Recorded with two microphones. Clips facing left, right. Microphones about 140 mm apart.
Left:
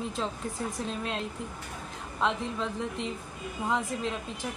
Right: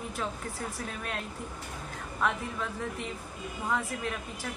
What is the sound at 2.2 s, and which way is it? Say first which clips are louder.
A woman's voice: left 2 dB; 20° left (ahead or behind).